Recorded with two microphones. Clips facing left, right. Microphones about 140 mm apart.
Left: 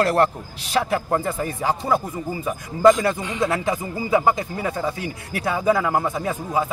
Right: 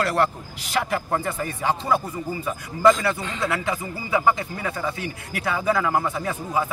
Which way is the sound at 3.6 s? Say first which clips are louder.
Left 4 dB; 35° left (ahead or behind).